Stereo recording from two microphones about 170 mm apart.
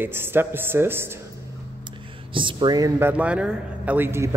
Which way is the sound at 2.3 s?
25° right (ahead or behind).